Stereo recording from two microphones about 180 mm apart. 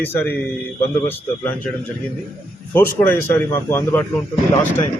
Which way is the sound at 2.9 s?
15° left (ahead or behind).